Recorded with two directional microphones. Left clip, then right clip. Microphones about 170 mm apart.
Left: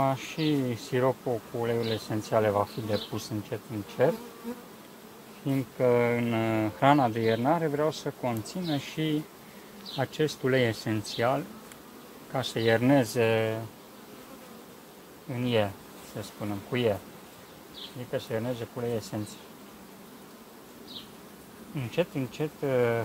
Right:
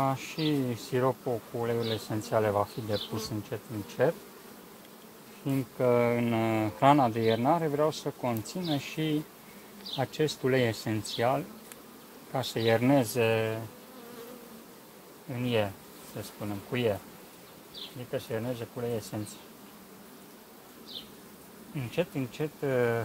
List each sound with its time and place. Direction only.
0.0 s speech: 20° right (ahead or behind)
5.5 s speech: 25° right (ahead or behind)
9.9 s speech: 20° right (ahead or behind)
15.3 s speech: 5° right (ahead or behind)
18.1 s speech: 10° right (ahead or behind)
21.7 s speech: 15° right (ahead or behind)